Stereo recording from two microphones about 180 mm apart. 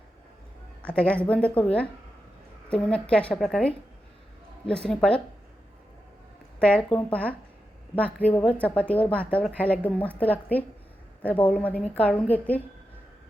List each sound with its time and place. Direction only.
0.8 s a woman's voice: 5° left (ahead or behind)
6.6 s a woman's voice: 5° left (ahead or behind)